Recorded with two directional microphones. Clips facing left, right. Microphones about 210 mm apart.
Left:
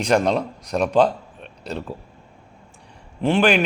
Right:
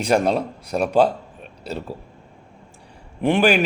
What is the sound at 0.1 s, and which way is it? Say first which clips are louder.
Speech: even; 5° right (ahead or behind).